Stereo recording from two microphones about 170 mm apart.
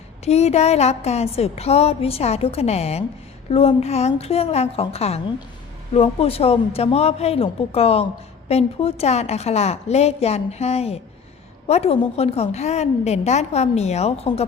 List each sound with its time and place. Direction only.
0.3 s speech: 40° left (ahead or behind)